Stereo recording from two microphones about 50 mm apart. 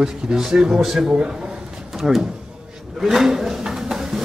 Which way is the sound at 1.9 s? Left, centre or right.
Centre.